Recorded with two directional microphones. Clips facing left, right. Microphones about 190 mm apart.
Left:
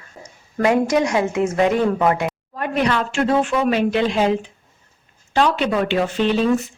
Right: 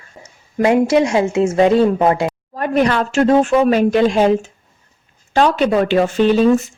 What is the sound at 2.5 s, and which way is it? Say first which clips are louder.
Speech: right 5 dB; 40° right (ahead or behind).